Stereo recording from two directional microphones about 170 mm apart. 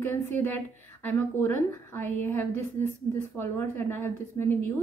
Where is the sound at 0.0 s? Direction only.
10° left (ahead or behind).